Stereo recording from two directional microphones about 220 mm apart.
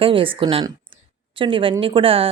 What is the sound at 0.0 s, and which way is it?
Speech, 25° right (ahead or behind).